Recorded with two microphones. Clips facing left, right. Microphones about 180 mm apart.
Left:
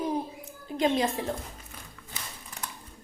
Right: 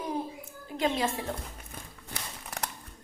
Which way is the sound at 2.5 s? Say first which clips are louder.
Right 5 dB; 75° right (ahead or behind).